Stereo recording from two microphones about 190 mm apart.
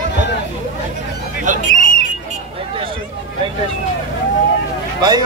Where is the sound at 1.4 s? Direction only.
40° right (ahead or behind).